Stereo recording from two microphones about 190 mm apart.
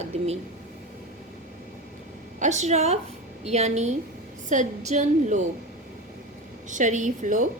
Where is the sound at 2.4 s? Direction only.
40° right (ahead or behind).